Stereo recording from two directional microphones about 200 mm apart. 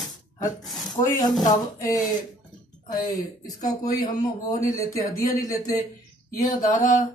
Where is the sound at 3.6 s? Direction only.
20° left (ahead or behind).